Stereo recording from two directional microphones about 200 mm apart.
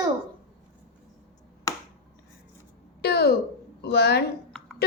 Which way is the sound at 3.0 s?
55° left (ahead or behind).